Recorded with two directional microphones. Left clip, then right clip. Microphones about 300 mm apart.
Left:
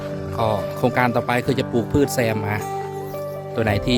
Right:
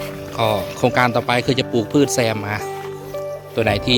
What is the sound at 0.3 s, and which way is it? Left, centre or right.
Speech, centre.